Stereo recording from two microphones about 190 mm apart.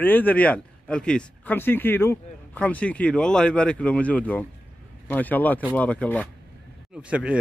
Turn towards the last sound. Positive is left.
turn(degrees=-5)  # may be behind; listen again after turning